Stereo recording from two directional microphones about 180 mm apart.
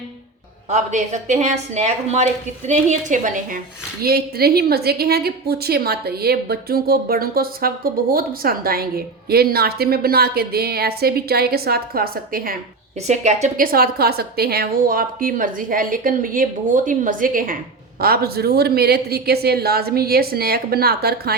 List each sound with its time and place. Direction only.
0.7 s a woman's voice: 40° right (ahead or behind)
4.0 s a woman's voice: 60° right (ahead or behind)
13.1 s a woman's voice: 40° right (ahead or behind); by 21.3 s 60° right (ahead or behind)